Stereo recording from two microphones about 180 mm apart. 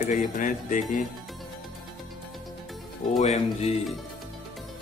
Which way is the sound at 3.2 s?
40° left (ahead or behind).